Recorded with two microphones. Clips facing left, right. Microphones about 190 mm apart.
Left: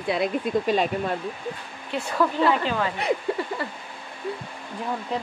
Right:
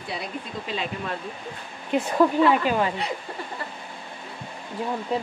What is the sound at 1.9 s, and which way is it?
Speech, 20° right (ahead or behind).